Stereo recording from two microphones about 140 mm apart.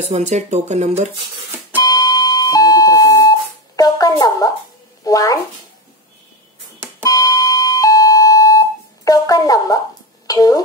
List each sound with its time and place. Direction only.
0.0 s speech: 55° right (ahead or behind)
1.8 s music: 25° left (ahead or behind)
5.0 s speech: 25° left (ahead or behind)
7.0 s doorbell: 25° left (ahead or behind)
10.2 s a sound: 25° left (ahead or behind)